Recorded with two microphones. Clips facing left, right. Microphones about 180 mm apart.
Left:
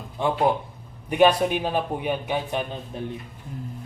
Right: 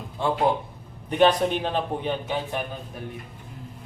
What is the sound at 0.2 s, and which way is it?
A man's voice, 15° left (ahead or behind).